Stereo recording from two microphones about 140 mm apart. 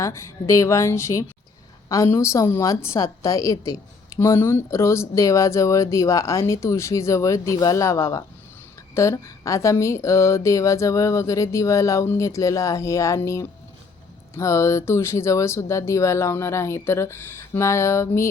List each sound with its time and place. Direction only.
0.0 s a woman's voice: 20° left (ahead or behind)